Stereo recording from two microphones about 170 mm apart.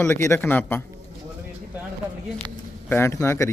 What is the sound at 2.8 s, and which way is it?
Speech, 15° left (ahead or behind).